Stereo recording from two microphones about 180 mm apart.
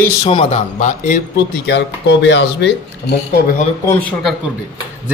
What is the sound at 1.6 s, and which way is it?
Speech, 70° left (ahead or behind).